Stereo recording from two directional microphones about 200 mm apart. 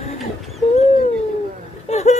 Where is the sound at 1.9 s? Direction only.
35° left (ahead or behind).